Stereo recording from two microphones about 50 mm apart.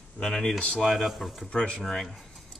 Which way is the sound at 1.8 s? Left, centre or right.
Centre.